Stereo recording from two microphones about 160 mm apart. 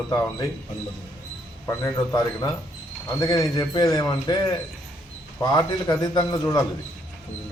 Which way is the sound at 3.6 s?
25° left (ahead or behind).